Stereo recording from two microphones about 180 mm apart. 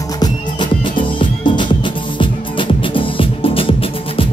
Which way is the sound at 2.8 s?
30° left (ahead or behind).